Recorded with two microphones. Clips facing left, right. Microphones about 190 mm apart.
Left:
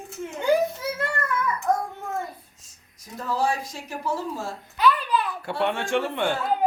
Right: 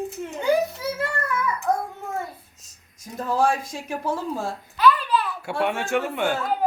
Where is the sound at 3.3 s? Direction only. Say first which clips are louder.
Right 3 dB; 50° right (ahead or behind).